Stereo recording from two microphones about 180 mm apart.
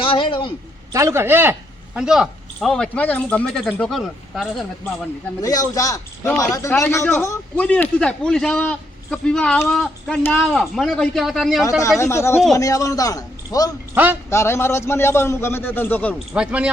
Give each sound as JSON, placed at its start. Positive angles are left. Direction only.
{"t": 0.0, "sound": "a sound", "side_deg": 30}
{"t": 0.9, "sound": "a man's voice", "side_deg": -15}
{"t": 5.4, "sound": "a man's voice", "side_deg": 20}
{"t": 11.8, "sound": "a man's voice", "side_deg": 15}
{"t": 13.9, "sound": "a man's voice", "side_deg": -10}
{"t": 14.3, "sound": "a man's voice", "side_deg": 15}
{"t": 16.3, "sound": "a man's voice", "side_deg": -5}